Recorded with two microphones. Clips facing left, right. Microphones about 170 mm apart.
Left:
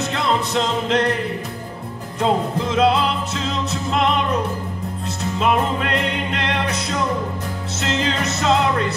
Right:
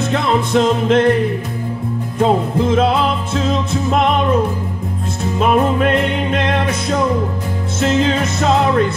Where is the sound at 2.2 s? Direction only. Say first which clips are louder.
Right 5 dB; 50° right (ahead or behind).